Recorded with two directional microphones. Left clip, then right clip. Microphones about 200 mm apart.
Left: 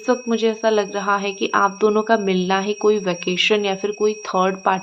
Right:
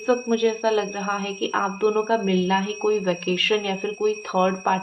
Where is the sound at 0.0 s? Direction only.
30° left (ahead or behind).